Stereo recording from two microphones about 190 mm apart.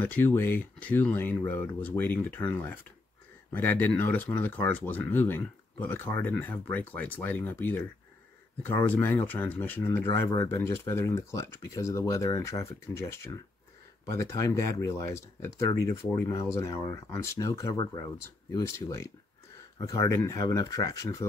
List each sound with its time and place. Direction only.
0.0 s speech: 10° left (ahead or behind)